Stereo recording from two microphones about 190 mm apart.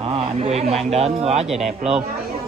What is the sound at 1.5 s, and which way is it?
Speech, centre (ahead or behind).